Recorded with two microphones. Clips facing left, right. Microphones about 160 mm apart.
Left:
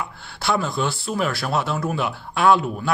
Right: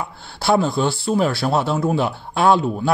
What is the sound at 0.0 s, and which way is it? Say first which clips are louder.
Speech: right 3 dB; 35° right (ahead or behind).